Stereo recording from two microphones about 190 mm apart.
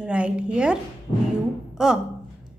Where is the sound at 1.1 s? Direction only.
30° left (ahead or behind).